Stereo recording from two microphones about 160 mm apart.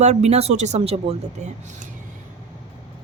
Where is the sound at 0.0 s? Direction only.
45° right (ahead or behind).